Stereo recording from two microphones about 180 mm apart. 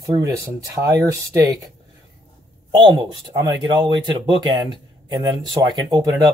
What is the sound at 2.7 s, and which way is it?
Speech, 25° right (ahead or behind).